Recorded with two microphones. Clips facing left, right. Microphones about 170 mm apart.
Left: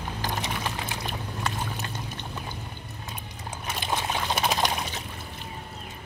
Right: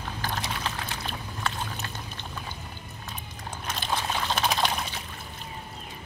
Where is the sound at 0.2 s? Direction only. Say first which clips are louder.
Left 1 dB; 15° left (ahead or behind).